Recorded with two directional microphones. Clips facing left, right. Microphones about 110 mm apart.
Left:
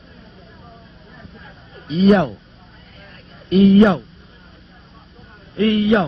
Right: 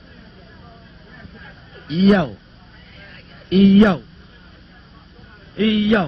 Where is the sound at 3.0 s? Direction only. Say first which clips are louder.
Even; 30° left (ahead or behind).